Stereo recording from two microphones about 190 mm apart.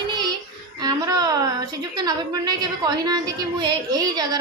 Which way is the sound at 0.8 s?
20° right (ahead or behind).